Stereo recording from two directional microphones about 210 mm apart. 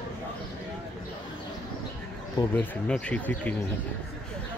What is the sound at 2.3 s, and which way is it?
Speech, 10° left (ahead or behind).